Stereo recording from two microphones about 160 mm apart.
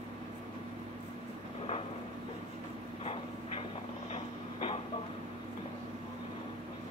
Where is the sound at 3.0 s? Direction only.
35° left (ahead or behind).